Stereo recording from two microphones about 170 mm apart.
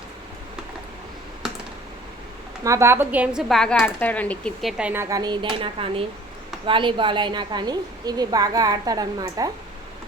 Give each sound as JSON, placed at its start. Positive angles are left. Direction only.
{"t": 2.6, "sound": "a woman's voice", "side_deg": -15}
{"t": 3.5, "sound": "speech", "side_deg": 0}
{"t": 4.8, "sound": "a woman's voice", "side_deg": -10}